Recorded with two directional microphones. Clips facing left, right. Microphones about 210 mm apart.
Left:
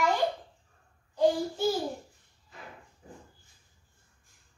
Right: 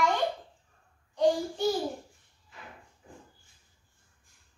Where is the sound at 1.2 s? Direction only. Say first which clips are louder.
Even; centre (ahead or behind).